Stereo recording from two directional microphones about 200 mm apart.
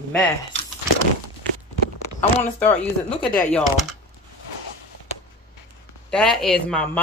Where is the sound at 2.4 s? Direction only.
10° left (ahead or behind).